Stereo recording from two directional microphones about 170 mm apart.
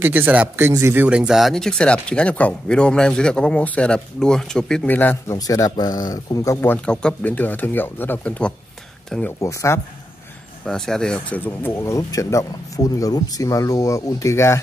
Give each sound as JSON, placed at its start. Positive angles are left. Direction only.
{"t": 0.0, "sound": "speech", "side_deg": -10}
{"t": 9.4, "sound": "speech", "side_deg": 15}
{"t": 10.7, "sound": "speech", "side_deg": 5}